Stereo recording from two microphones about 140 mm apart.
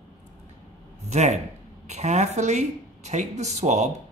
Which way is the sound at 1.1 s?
55° right (ahead or behind).